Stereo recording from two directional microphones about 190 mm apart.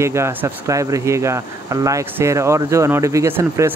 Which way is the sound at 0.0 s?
15° right (ahead or behind).